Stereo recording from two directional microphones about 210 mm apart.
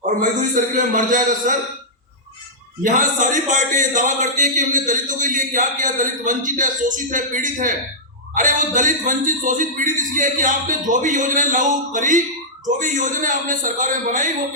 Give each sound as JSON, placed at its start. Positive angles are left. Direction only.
{"t": 0.2, "sound": "a man's voice", "side_deg": -40}
{"t": 2.8, "sound": "a man's voice", "side_deg": -35}